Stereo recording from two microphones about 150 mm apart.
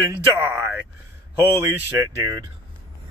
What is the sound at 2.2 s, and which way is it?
Speech, 25° right (ahead or behind).